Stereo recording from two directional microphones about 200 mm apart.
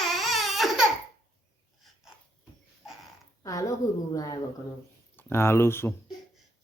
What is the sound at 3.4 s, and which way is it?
A woman's voice, 15° left (ahead or behind).